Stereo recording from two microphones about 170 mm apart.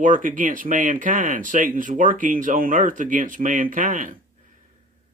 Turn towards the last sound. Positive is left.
turn(degrees=-50)  # may be behind; listen again after turning